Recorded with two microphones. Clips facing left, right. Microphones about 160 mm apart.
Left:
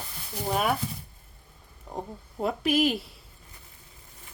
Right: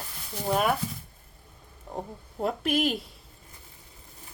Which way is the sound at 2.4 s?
Centre (ahead or behind).